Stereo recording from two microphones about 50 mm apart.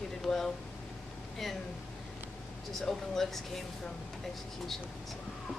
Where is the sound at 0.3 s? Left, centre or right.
Centre.